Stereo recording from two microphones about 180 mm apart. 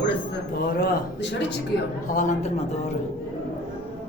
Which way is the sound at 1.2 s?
75° left (ahead or behind).